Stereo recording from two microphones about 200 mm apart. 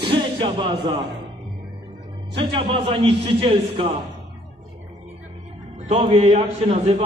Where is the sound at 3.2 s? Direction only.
30° right (ahead or behind).